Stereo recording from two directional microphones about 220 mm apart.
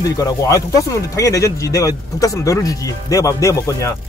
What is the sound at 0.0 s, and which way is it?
Speech, 15° left (ahead or behind).